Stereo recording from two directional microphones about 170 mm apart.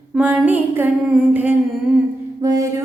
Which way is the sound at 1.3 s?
10° right (ahead or behind).